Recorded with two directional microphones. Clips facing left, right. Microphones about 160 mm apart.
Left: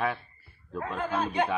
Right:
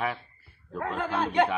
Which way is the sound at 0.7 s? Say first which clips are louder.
Right 1 dB; 70° right (ahead or behind).